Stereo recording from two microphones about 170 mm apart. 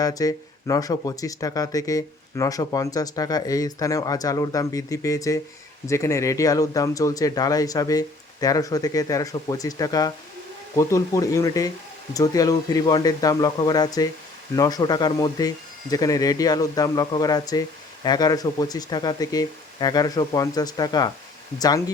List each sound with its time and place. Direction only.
0.0 s speech: 20° left (ahead or behind)